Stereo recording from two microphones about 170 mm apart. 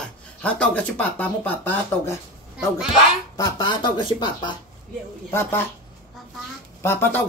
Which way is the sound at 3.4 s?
25° left (ahead or behind).